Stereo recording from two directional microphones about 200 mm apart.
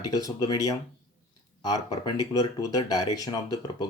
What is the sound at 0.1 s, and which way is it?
Speech, 20° left (ahead or behind).